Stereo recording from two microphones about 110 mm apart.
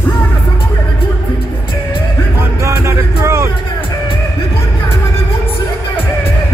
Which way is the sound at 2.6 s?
25° right (ahead or behind).